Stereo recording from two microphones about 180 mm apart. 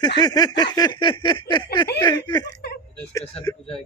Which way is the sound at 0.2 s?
20° left (ahead or behind).